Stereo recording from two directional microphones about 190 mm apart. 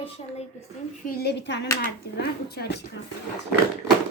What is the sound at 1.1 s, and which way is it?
Speech, 55° left (ahead or behind).